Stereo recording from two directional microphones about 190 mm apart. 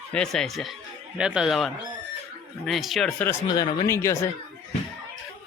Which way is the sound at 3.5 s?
25° left (ahead or behind).